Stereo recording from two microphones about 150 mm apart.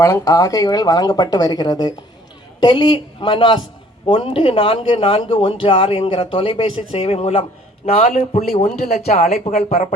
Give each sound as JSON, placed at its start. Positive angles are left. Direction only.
{"t": 0.0, "sound": "a man's voice", "side_deg": 20}